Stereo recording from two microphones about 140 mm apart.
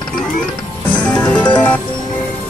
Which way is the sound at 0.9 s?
10° left (ahead or behind).